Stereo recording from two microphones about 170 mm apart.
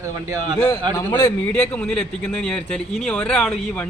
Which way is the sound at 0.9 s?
20° left (ahead or behind).